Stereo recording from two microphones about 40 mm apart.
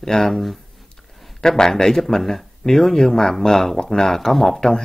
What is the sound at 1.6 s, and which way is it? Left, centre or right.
Speech, centre.